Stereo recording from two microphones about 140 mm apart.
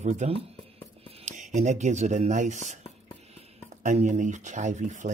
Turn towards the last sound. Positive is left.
turn(degrees=-60)  # may be behind; listen again after turning